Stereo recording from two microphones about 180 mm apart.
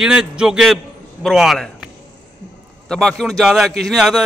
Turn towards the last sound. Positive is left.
turn(degrees=0)  # may be behind; listen again after turning